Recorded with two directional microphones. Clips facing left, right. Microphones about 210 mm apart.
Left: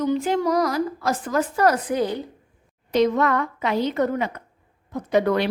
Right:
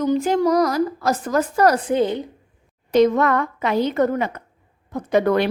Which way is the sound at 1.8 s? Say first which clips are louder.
Right 4 dB; 25° right (ahead or behind).